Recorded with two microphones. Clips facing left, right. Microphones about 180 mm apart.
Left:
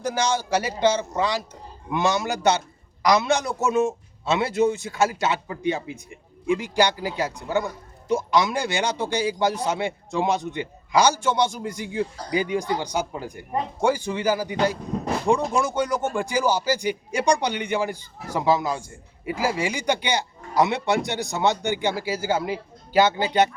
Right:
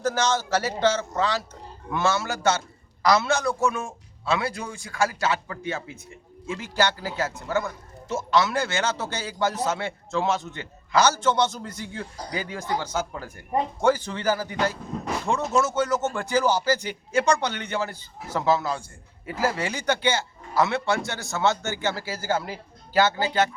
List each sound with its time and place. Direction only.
0.0 s a man's voice: 15° left (ahead or behind)
15.5 s speech: 15° left (ahead or behind)